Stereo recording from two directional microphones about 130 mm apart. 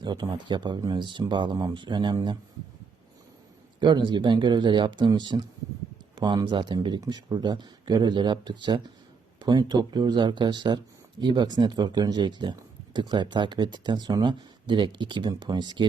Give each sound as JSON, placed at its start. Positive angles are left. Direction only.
{"t": 0.0, "sound": "speech", "side_deg": -35}
{"t": 3.8, "sound": "speech", "side_deg": -35}